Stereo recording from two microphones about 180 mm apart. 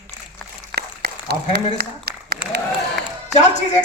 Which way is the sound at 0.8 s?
65° right (ahead or behind).